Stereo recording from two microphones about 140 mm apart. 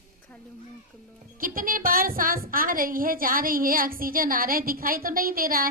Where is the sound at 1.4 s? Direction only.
80° right.